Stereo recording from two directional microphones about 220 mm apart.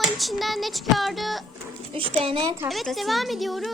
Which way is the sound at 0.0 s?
Centre (ahead or behind).